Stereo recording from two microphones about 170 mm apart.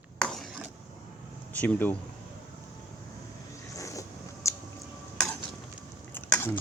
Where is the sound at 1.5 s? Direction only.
10° left (ahead or behind).